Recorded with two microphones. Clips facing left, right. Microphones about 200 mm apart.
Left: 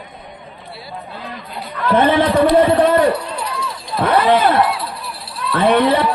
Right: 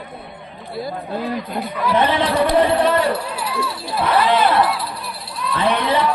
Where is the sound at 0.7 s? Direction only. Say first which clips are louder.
Right 8 dB; 45° right (ahead or behind).